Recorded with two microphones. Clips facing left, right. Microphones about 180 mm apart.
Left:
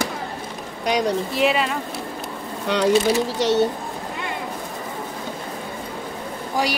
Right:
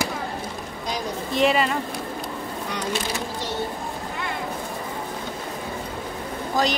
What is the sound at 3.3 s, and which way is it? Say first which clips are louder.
Speech: left 10 dB; 80° left.